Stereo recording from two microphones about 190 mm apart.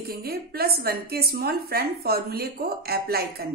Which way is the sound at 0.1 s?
55° right (ahead or behind).